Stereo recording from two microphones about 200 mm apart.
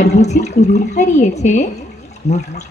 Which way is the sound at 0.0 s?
35° left (ahead or behind).